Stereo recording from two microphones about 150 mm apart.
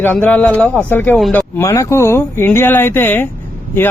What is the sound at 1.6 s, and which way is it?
Speech, 20° left (ahead or behind).